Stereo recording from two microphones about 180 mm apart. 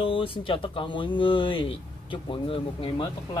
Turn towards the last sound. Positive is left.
turn(degrees=30)  # may be behind; listen again after turning